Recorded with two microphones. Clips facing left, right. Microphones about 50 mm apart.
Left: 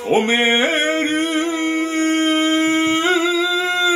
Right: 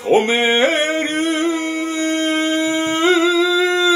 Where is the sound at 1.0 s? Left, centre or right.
Left.